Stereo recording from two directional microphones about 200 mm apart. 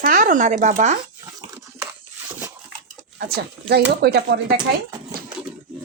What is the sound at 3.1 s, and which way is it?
Speech, 50° right (ahead or behind).